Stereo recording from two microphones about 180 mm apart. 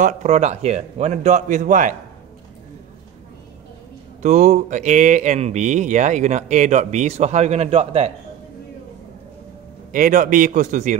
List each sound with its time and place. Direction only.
0.0 s speech: 40° right (ahead or behind)
4.2 s speech: 40° right (ahead or behind)
9.9 s speech: 50° right (ahead or behind)